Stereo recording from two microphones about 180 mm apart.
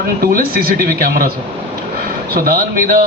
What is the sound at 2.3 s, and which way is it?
Speech, 55° right (ahead or behind).